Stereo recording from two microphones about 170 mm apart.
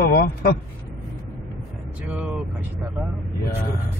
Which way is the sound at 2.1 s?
5° right (ahead or behind).